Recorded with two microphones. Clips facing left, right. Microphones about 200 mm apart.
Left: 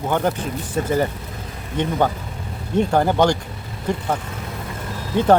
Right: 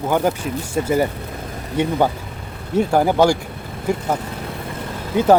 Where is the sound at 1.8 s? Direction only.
10° right (ahead or behind).